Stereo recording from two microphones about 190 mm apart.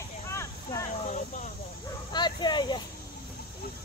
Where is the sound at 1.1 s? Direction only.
40° left (ahead or behind).